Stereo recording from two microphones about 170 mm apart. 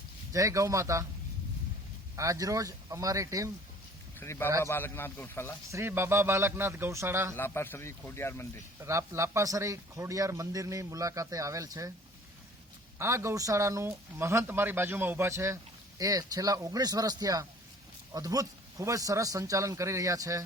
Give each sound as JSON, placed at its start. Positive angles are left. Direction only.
{"t": 0.3, "sound": "speech", "side_deg": -20}
{"t": 2.1, "sound": "a man's voice", "side_deg": -20}
{"t": 4.2, "sound": "speech", "side_deg": 15}
{"t": 5.7, "sound": "speech", "side_deg": -15}
{"t": 7.3, "sound": "speech", "side_deg": 15}
{"t": 8.8, "sound": "a man's voice", "side_deg": -15}
{"t": 13.0, "sound": "a man's voice", "side_deg": -15}